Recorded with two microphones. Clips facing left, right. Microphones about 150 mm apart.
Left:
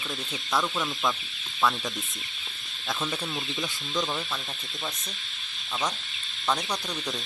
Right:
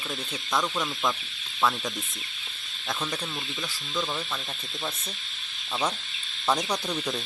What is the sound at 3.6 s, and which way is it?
Speech, 20° left (ahead or behind).